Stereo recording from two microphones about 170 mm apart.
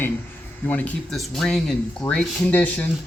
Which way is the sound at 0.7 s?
10° left (ahead or behind).